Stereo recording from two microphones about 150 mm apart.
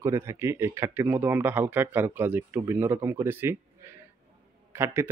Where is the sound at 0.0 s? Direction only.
20° right (ahead or behind).